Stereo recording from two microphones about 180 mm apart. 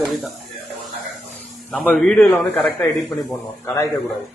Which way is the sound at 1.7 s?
5° left (ahead or behind).